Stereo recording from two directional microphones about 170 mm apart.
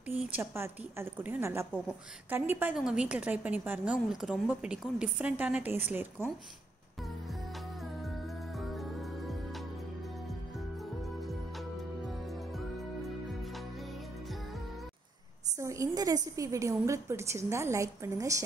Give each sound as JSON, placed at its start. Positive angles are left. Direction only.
{"t": 0.1, "sound": "a woman's voice", "side_deg": -15}
{"t": 15.6, "sound": "a woman's voice", "side_deg": -20}